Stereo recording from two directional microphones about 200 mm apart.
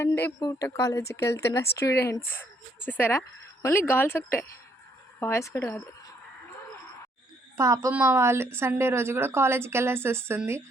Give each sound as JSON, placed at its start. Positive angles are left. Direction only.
{"t": 0.0, "sound": "speech", "side_deg": 10}
{"t": 7.5, "sound": "a woman's voice", "side_deg": -15}